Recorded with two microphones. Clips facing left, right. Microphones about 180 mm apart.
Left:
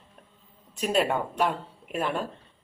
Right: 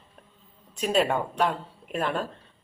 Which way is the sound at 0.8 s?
5° left (ahead or behind).